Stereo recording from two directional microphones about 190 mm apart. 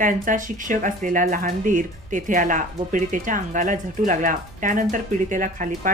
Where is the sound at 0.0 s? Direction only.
45° right (ahead or behind).